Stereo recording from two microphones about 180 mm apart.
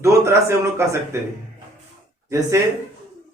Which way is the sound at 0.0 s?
15° right (ahead or behind).